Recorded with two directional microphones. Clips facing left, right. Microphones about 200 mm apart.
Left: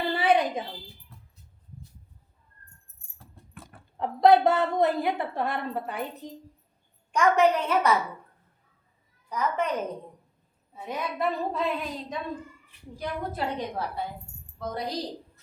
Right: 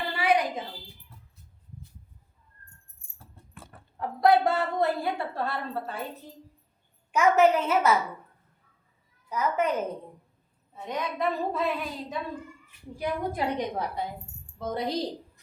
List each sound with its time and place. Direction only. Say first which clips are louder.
0.2 s a sound: left 1 dB; 25° left (ahead or behind)
3.9 s a woman's voice: left 3 dB; 20° left (ahead or behind)
7.1 s a woman's voice: right 1 dB; 5° right (ahead or behind)
9.3 s a woman's voice: right 1 dB; 5° right (ahead or behind)
10.8 s a woman's voice: even; 5° left (ahead or behind)
13.0 s a woman's voice: right 2 dB; 15° right (ahead or behind)